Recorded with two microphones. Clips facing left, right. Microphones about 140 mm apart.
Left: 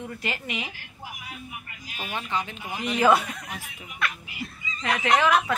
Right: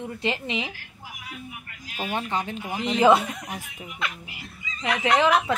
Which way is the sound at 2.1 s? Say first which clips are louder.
Right 2 dB; 45° right (ahead or behind).